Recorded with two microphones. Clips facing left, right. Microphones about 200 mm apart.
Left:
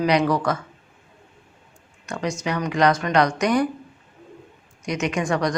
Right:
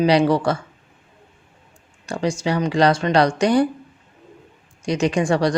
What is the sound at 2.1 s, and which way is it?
A woman's voice, 30° right (ahead or behind).